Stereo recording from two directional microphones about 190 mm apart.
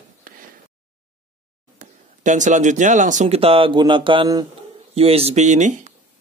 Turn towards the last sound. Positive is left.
turn(degrees=-40)  # may be behind; listen again after turning